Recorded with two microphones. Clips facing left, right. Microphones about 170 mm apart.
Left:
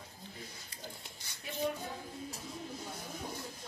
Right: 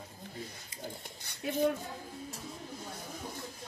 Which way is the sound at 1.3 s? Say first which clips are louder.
Right 7 dB; 55° right (ahead or behind).